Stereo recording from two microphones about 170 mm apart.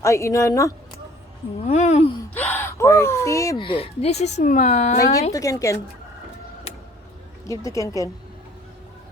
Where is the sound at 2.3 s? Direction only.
10° left (ahead or behind).